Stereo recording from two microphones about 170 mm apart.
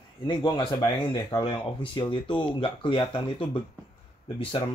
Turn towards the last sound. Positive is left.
turn(degrees=30)  # may be behind; listen again after turning